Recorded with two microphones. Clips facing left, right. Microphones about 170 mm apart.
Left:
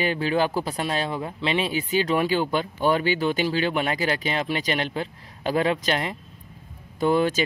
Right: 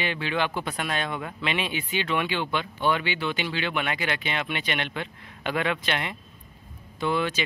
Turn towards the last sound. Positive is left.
turn(degrees=40)  # may be behind; listen again after turning